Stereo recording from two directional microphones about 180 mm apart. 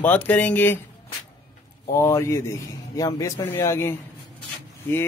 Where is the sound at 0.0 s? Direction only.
10° left (ahead or behind).